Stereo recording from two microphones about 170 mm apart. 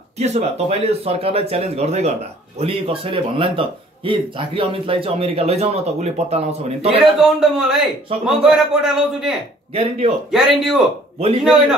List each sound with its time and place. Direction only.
0.2 s speech: 40° right (ahead or behind)
7.0 s a man's voice: centre (ahead or behind)
9.8 s speech: 35° right (ahead or behind)
10.3 s a man's voice: centre (ahead or behind)